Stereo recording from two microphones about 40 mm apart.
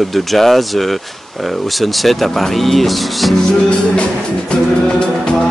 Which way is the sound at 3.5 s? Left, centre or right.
Left.